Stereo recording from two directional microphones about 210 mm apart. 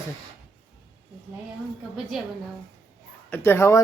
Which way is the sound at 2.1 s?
Centre (ahead or behind).